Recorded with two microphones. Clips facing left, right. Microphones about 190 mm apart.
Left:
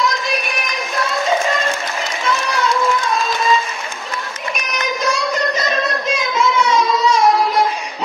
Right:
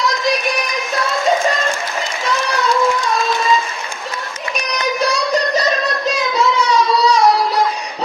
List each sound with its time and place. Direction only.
5.0 s child singing: 35° right (ahead or behind)